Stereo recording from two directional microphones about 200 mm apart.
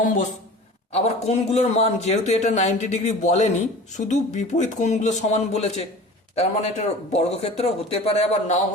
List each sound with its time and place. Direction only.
0.9 s a man's voice: 30° left (ahead or behind)